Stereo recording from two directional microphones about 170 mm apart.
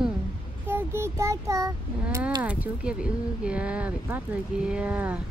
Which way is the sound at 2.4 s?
5° right (ahead or behind).